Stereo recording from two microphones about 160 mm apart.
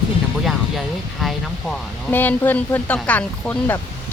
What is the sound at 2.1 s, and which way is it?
Speech, 10° left (ahead or behind).